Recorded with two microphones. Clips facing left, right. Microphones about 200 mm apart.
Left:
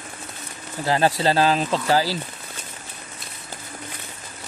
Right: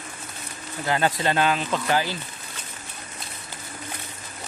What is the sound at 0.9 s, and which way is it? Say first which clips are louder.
Speech: left 3 dB; 30° left (ahead or behind).